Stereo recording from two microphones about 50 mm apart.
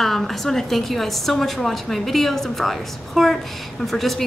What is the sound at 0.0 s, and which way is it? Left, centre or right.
A woman's voice, centre.